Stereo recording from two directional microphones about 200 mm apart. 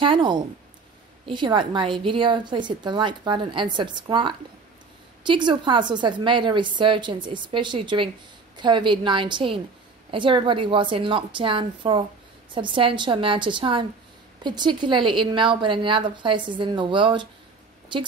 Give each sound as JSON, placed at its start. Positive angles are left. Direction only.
{"t": 0.0, "sound": "a woman's voice", "side_deg": -25}